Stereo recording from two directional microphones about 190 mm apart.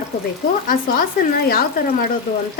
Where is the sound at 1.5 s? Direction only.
50° left (ahead or behind).